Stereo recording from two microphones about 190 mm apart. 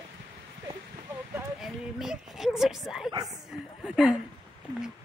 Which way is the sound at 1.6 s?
Centre (ahead or behind).